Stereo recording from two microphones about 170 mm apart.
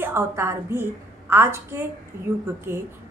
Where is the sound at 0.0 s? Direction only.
15° right (ahead or behind).